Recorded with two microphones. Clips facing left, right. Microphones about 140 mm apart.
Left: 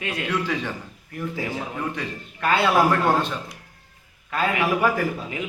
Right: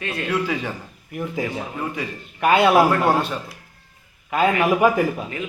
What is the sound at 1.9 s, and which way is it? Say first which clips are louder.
Speech: right 1 dB; 10° right (ahead or behind).